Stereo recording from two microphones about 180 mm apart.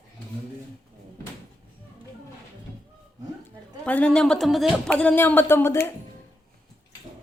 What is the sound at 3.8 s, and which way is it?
Speech, 5° left (ahead or behind).